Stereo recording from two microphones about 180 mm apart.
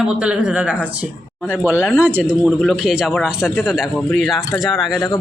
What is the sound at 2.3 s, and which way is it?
Speech, centre (ahead or behind).